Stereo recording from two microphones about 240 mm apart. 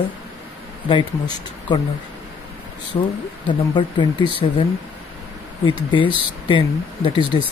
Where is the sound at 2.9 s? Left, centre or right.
Left.